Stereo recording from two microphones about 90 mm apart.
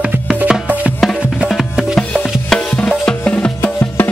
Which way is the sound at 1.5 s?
Centre (ahead or behind).